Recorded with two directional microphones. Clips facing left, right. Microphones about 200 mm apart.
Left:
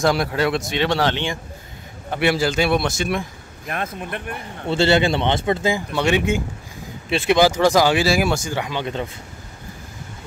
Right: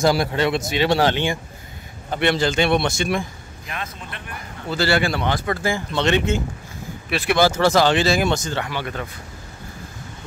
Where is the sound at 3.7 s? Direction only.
55° left (ahead or behind).